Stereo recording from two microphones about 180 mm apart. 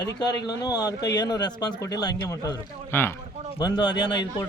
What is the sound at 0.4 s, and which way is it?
A man's voice, 20° left (ahead or behind).